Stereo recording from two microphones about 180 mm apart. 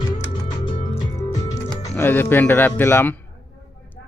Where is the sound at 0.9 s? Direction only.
40° left (ahead or behind).